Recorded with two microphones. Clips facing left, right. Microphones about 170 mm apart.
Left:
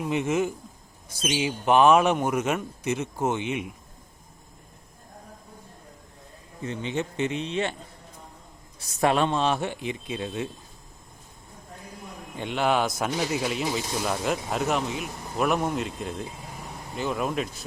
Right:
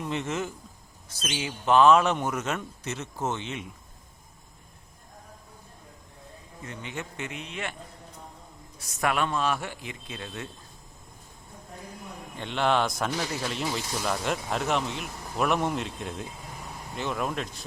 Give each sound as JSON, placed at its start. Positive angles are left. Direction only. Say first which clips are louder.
{"t": 0.0, "sound": "speech", "louder": "left 6 dB", "side_deg": 10}
{"t": 6.6, "sound": "speech", "louder": "left 8 dB", "side_deg": 25}
{"t": 8.8, "sound": "speech", "louder": "left 5 dB", "side_deg": 30}
{"t": 12.4, "sound": "speech", "louder": "left 1 dB", "side_deg": 10}
{"t": 13.6, "sound": "speech", "louder": "left 3 dB", "side_deg": 0}